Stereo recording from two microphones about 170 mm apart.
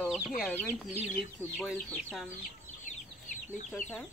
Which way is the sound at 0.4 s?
10° left (ahead or behind).